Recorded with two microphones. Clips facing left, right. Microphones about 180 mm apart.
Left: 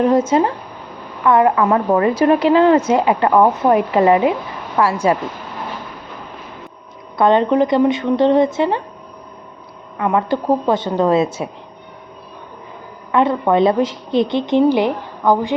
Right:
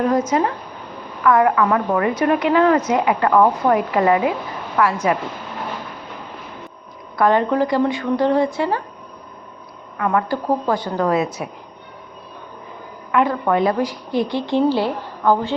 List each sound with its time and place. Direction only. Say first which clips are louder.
0.0 s a woman's voice: left 4 dB; 25° left (ahead or behind)
7.2 s a woman's voice: left 3 dB; 25° left (ahead or behind)
10.0 s a woman's voice: left 2 dB; 20° left (ahead or behind)
13.1 s a sound: left 2 dB; 30° left (ahead or behind)
13.4 s a woman's voice: left 4 dB; 25° left (ahead or behind)